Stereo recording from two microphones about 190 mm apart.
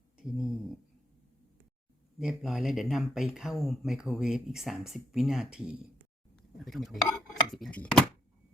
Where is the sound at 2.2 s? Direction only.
Centre (ahead or behind).